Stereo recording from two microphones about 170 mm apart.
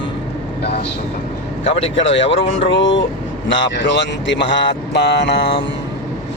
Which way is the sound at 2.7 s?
90° left.